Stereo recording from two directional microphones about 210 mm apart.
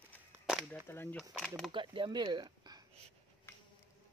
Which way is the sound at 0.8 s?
10° left (ahead or behind).